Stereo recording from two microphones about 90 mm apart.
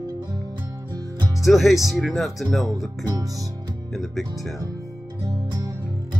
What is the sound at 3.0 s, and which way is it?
Speech, 40° right (ahead or behind).